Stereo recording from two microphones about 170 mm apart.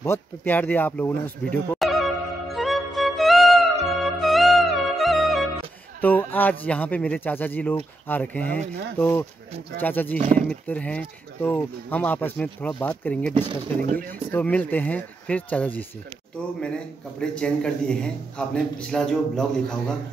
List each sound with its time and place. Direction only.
0.0 s a sound: 10° left (ahead or behind)
5.9 s speech: 10° left (ahead or behind)
13.7 s speech: 55° right (ahead or behind)
14.3 s a man's voice: 10° left (ahead or behind)